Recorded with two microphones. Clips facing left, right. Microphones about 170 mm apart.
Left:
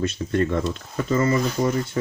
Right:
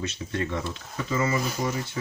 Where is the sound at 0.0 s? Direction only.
50° left (ahead or behind).